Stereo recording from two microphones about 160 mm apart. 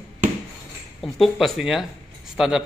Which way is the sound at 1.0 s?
Centre (ahead or behind).